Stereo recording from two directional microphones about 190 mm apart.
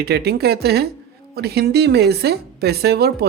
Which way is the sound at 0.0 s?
55° right (ahead or behind).